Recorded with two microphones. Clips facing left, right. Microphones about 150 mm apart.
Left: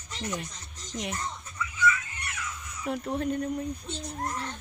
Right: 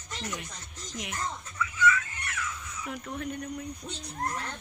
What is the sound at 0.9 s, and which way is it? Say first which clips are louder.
Speech: left 4 dB; 35° left (ahead or behind).